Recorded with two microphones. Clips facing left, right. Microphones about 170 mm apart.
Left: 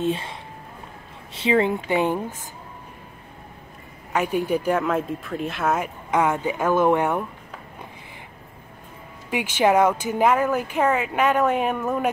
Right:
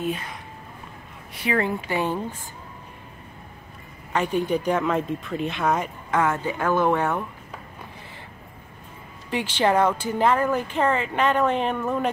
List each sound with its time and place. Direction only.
0.0 s speech: 25° left (ahead or behind)
4.1 s speech: 10° left (ahead or behind)
6.0 s speech: 15° left (ahead or behind)
9.3 s speech: 10° left (ahead or behind)